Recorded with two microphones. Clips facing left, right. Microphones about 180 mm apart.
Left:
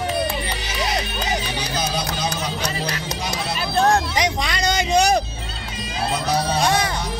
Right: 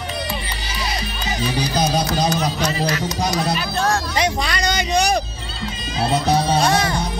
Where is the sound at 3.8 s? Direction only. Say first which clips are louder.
Right 1 dB; 15° left (ahead or behind).